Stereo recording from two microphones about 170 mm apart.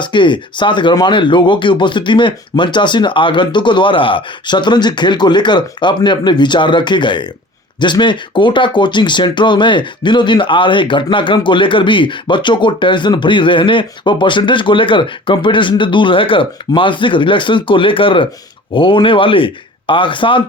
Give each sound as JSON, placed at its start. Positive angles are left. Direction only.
{"t": 0.0, "sound": "speech", "side_deg": 25}